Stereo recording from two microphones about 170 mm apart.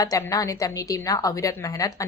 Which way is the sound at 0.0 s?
20° left (ahead or behind).